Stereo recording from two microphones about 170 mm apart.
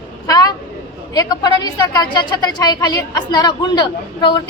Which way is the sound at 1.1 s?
25° left (ahead or behind).